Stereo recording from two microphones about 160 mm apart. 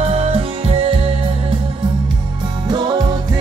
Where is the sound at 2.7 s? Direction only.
25° right (ahead or behind).